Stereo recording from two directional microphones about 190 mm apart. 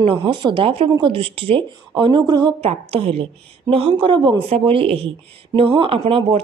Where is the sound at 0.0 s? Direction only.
25° right (ahead or behind).